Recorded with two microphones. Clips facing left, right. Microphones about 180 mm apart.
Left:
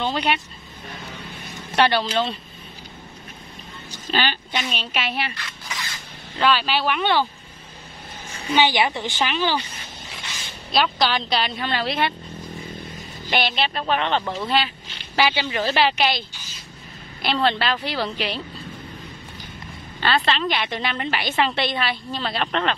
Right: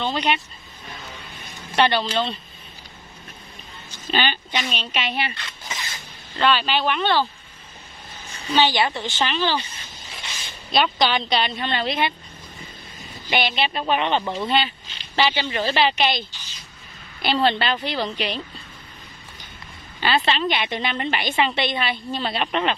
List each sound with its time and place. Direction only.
0.0 s a woman's voice: 5° left (ahead or behind)
1.8 s a woman's voice: 10° left (ahead or behind)
4.1 s a woman's voice: centre (ahead or behind)
5.3 s a sound: 25° right (ahead or behind)
6.3 s a woman's voice: 5° left (ahead or behind)
8.5 s a woman's voice: 15° left (ahead or behind)
10.7 s a woman's voice: centre (ahead or behind)
13.3 s a woman's voice: centre (ahead or behind)
20.2 s a woman's voice: centre (ahead or behind)